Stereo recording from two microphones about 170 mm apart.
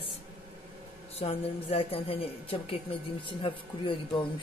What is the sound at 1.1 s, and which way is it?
A woman's voice, 35° left (ahead or behind).